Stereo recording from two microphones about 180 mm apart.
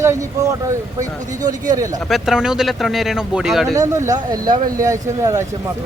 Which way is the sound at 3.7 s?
20° right (ahead or behind).